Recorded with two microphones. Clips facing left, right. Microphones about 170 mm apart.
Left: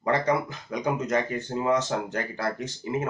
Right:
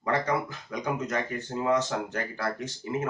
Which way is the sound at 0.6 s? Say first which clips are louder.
Left 5 dB; 20° left (ahead or behind).